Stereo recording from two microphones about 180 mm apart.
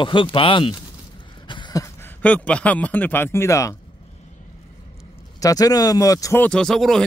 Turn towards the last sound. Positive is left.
turn(degrees=0)  # may be behind; listen again after turning